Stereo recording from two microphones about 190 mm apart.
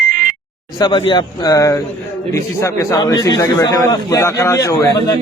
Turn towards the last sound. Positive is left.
turn(degrees=20)  # may be behind; listen again after turning